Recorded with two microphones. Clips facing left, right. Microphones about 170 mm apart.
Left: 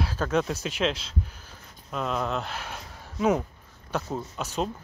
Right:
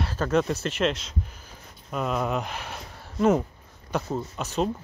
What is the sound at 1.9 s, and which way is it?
Speech, 5° right (ahead or behind).